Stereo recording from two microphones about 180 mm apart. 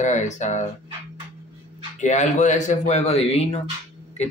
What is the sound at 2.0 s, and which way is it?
Speech, 40° left (ahead or behind).